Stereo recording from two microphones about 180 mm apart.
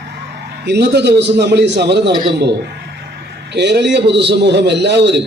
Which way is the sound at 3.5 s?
70° right (ahead or behind).